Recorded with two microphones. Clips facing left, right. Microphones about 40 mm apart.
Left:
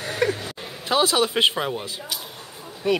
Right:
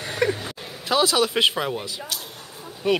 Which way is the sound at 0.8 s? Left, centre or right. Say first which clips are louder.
Even; centre.